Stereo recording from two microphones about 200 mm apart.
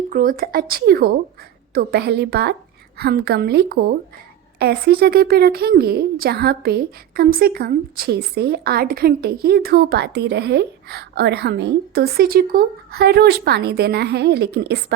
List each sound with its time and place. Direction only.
0.1 s a woman's voice: 45° right (ahead or behind)